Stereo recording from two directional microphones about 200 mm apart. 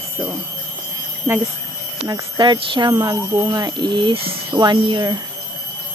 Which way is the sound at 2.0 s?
20° right (ahead or behind).